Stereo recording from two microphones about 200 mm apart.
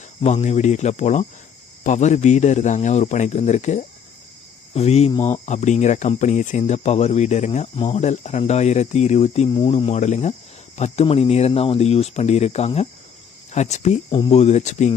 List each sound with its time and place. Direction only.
0.2 s speech: 35° left (ahead or behind)